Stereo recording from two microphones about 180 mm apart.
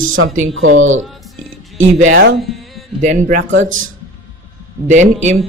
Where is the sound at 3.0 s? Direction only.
40° right (ahead or behind).